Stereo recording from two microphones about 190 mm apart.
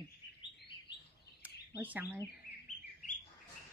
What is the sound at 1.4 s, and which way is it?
Bird, 10° right (ahead or behind).